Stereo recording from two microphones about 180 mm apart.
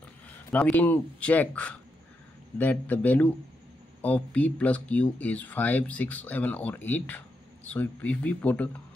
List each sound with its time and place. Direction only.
0.5 s speech: 10° left (ahead or behind)